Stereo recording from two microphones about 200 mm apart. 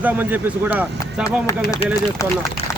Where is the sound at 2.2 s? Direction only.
15° left (ahead or behind).